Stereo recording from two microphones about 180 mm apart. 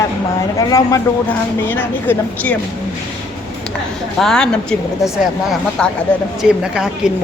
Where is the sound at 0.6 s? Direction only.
20° left (ahead or behind).